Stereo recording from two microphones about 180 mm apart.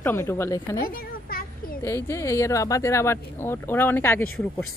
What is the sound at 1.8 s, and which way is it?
Speech, 15° left (ahead or behind).